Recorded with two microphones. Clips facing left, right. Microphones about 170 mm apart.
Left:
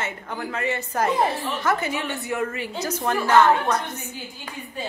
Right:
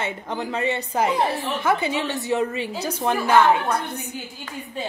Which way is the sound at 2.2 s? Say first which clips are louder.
Right 4 dB; 20° right (ahead or behind).